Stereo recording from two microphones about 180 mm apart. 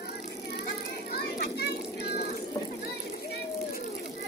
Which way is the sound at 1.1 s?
60° left (ahead or behind).